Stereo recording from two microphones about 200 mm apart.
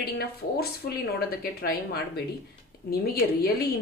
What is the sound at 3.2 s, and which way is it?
Speech, 50° left (ahead or behind).